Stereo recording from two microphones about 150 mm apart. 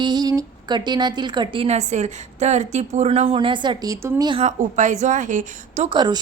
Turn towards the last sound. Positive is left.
turn(degrees=-30)  # may be behind; listen again after turning